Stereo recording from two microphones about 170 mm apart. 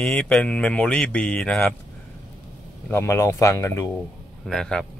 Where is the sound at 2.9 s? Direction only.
15° left (ahead or behind).